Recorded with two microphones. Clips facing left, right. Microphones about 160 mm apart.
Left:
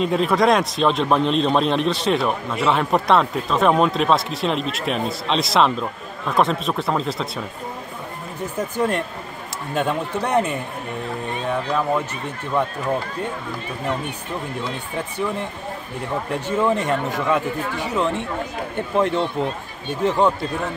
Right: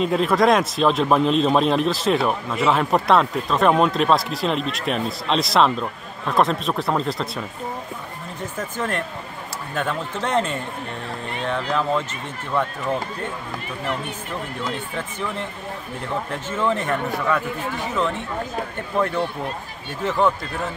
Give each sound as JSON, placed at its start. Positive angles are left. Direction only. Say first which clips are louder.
{"t": 0.0, "sound": "a man's voice", "louder": "even", "side_deg": 0}
{"t": 8.5, "sound": "speech", "louder": "left 5 dB", "side_deg": 15}
{"t": 16.3, "sound": "speech", "louder": "left 4 dB", "side_deg": 15}
{"t": 18.8, "sound": "speech", "louder": "left 3 dB", "side_deg": 20}